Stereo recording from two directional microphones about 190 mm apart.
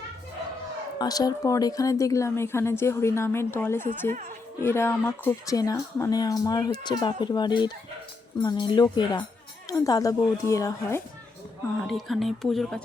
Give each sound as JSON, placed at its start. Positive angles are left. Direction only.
{"t": 0.9, "sound": "speech", "side_deg": 20}
{"t": 11.9, "sound": "speech", "side_deg": 0}